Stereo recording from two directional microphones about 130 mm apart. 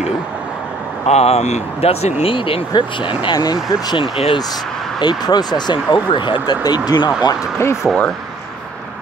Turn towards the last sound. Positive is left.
turn(degrees=20)  # may be behind; listen again after turning